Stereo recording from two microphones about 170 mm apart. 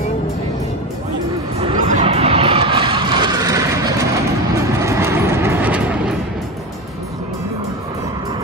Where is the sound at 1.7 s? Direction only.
45° right (ahead or behind); by 6.1 s 5° right (ahead or behind).